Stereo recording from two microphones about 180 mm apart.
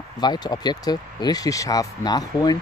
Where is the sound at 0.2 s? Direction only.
25° left (ahead or behind).